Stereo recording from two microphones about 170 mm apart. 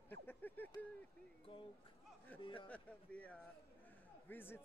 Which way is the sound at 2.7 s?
10° left (ahead or behind).